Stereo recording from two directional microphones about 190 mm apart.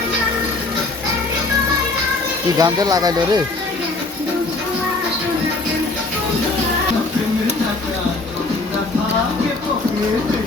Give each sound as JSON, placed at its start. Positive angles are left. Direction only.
{"t": 2.6, "sound": "speech", "side_deg": -20}